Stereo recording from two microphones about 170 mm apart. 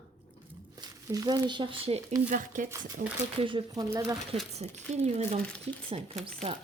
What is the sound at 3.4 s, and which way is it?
Speech, 30° right (ahead or behind).